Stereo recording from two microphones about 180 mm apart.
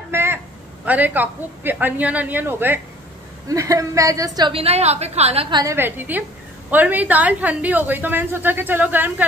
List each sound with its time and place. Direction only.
0.1 s a sound: 15° right (ahead or behind)
0.8 s a woman's voice: 10° right (ahead or behind); by 5.6 s 35° right (ahead or behind)
5.6 s a woman's voice: 15° right (ahead or behind)